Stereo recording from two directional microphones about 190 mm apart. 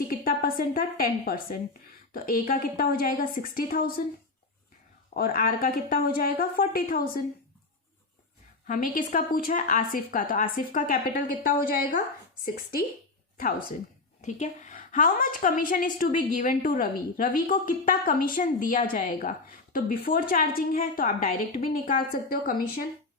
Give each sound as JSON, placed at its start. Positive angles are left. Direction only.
{"t": 0.1, "sound": "a woman's voice", "side_deg": 50}
{"t": 5.1, "sound": "a woman's voice", "side_deg": 45}
{"t": 8.6, "sound": "a woman's voice", "side_deg": 45}
{"t": 14.2, "sound": "a woman's voice", "side_deg": 40}